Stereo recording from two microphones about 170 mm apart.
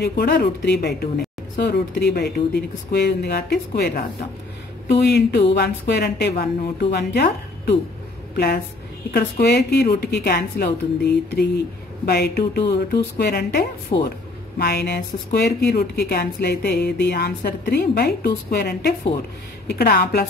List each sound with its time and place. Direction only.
0.0 s a woman's voice: 70° left (ahead or behind)
4.9 s a woman's voice: 80° left
9.1 s a woman's voice: 75° left (ahead or behind)
13.9 s a man's voice: 35° left (ahead or behind)
14.6 s a woman's voice: 70° left (ahead or behind)